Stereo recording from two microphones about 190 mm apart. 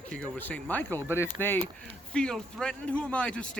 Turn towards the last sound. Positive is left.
turn(degrees=5)  # may be behind; listen again after turning